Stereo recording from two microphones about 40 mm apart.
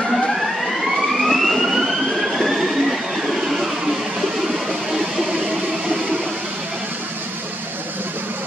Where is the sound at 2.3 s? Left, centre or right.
Centre.